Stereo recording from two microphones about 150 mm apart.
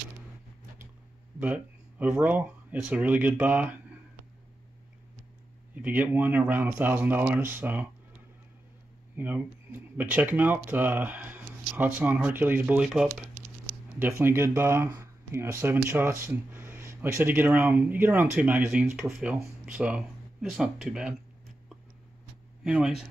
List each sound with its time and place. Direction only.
1.4 s speech: 10° right (ahead or behind)
5.8 s speech: 10° right (ahead or behind)
9.1 s speech: 10° right (ahead or behind)
13.9 s speech: 15° right (ahead or behind)
22.6 s speech: 5° right (ahead or behind)